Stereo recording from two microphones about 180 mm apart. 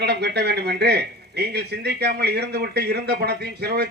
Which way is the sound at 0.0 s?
65° right (ahead or behind).